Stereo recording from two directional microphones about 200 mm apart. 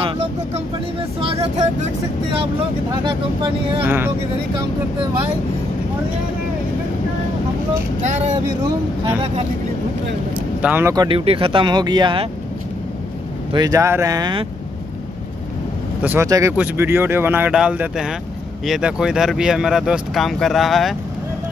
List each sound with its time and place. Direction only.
1.2 s speech: 30° right (ahead or behind)
3.8 s speech: 10° right (ahead or behind)
10.6 s speech: 10° right (ahead or behind)
13.5 s speech: 20° right (ahead or behind)
16.0 s speech: 10° right (ahead or behind)